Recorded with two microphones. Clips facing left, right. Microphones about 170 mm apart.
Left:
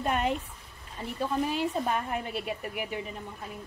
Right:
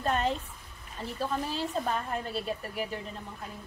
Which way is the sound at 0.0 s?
10° left (ahead or behind).